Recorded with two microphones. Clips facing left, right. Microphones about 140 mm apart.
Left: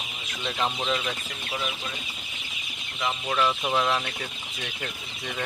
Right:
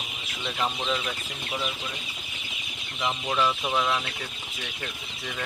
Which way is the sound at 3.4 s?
5° left (ahead or behind).